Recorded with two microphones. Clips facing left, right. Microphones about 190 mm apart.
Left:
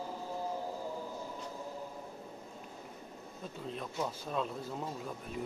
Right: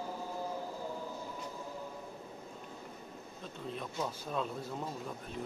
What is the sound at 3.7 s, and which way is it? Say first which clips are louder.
Speech: even; centre (ahead or behind).